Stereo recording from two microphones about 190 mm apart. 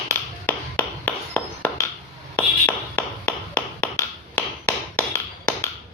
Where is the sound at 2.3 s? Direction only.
10° left (ahead or behind).